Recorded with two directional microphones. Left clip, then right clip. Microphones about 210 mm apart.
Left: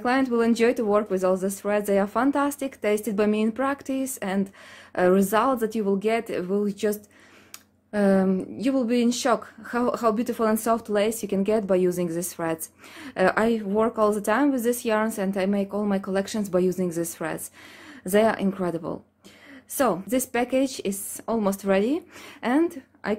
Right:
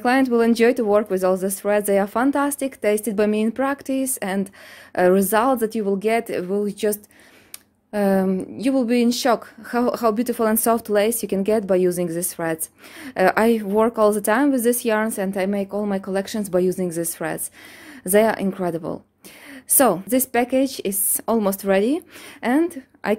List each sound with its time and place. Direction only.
0.0 s a woman's voice: 25° right (ahead or behind)